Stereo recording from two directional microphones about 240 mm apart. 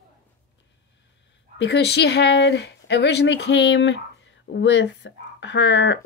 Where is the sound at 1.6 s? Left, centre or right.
Left.